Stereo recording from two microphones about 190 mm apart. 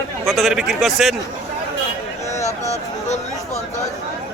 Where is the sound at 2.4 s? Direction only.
15° left (ahead or behind).